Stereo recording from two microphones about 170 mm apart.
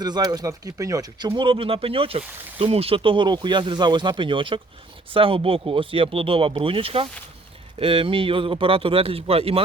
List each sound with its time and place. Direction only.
0.0 s speech: 25° right (ahead or behind)